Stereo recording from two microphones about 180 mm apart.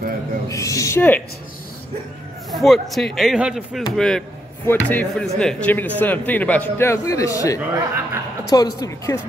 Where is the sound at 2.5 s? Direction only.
Centre (ahead or behind).